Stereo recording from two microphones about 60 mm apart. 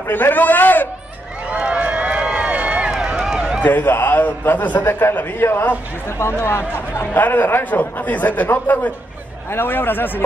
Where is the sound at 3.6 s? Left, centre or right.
Left.